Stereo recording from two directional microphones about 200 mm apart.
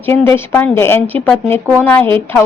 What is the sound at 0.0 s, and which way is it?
A woman's voice, 10° left (ahead or behind).